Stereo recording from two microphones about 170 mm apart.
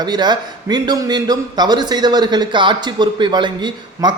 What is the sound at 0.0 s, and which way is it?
A man's voice, 25° right (ahead or behind).